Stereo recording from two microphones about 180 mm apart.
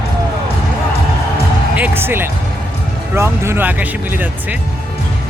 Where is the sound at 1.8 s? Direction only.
10° right (ahead or behind).